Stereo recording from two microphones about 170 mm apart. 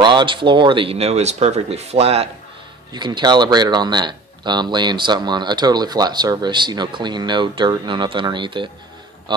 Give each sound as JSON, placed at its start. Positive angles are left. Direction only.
{"t": 0.0, "sound": "speech", "side_deg": -30}
{"t": 2.9, "sound": "speech", "side_deg": -25}